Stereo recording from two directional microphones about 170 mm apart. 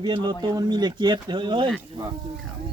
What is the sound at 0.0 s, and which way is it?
Speech, 25° right (ahead or behind).